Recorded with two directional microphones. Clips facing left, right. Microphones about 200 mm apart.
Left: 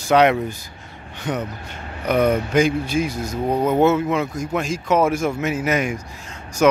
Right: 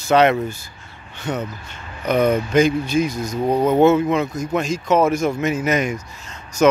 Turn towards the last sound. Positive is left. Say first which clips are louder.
# right 1 dB
turn(degrees=10)  # may be behind; listen again after turning